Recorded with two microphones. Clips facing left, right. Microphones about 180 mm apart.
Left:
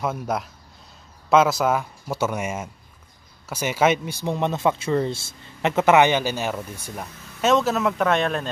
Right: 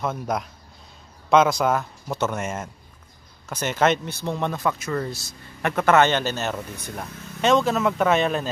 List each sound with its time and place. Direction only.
0.0 s speech: 5° left (ahead or behind)